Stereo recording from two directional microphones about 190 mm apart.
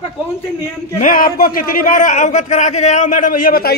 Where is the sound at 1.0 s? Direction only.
45° left (ahead or behind).